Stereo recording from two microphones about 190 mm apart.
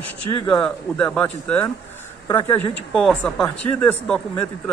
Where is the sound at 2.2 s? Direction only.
25° left (ahead or behind).